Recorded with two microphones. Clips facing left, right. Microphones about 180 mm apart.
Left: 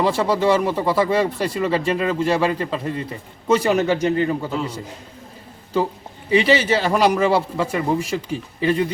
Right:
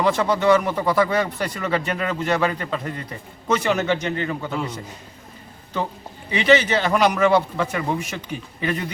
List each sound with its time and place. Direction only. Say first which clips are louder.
0.0 s speech: left 1 dB; 30° left (ahead or behind)
6.3 s speech: left 1 dB; 30° left (ahead or behind)